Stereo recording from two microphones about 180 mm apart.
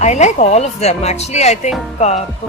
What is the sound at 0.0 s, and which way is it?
Speech, 40° left (ahead or behind).